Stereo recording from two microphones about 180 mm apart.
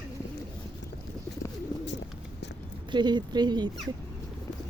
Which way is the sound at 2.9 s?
25° right (ahead or behind).